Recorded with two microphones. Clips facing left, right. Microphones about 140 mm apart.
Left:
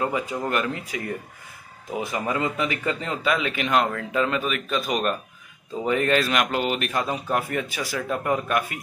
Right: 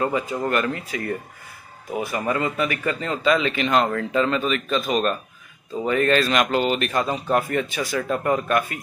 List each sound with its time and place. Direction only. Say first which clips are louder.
0.0 s a man's voice: right 2 dB; 10° left (ahead or behind)